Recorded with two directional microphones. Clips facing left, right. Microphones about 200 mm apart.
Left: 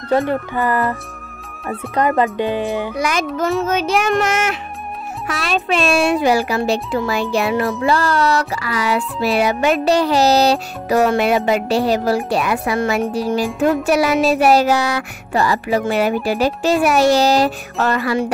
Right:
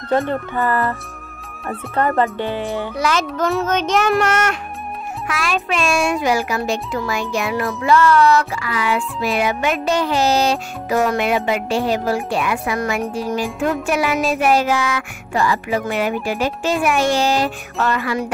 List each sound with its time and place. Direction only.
0.1 s speech: 10° left (ahead or behind)
2.0 s speech: 15° left (ahead or behind)
3.3 s speech: centre (ahead or behind)
5.7 s music: 35° left (ahead or behind)